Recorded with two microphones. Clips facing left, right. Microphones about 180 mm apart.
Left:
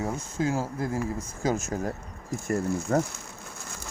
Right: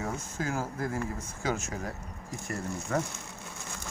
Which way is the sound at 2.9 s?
35° left (ahead or behind).